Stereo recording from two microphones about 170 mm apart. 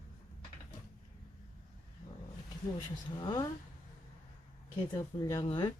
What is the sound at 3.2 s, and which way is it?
Speech, 25° left (ahead or behind).